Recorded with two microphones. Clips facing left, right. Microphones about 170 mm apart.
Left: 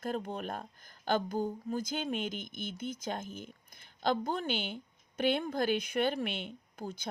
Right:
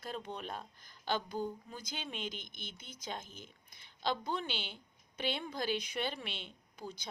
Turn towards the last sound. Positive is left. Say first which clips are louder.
# left 5 dB
turn(degrees=50)  # may be behind; listen again after turning